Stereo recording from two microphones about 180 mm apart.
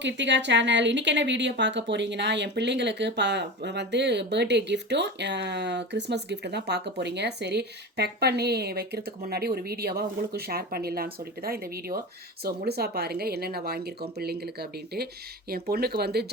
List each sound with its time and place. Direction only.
0.0 s a woman's voice: 80° right; by 16.2 s 60° right (ahead or behind)